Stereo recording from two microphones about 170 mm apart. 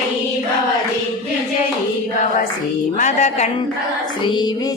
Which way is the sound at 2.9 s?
45° left (ahead or behind).